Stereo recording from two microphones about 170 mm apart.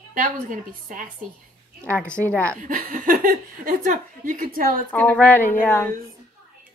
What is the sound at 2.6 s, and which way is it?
Speech, 55° right (ahead or behind).